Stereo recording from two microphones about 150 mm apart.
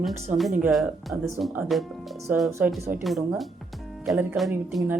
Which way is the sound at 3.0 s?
Centre (ahead or behind).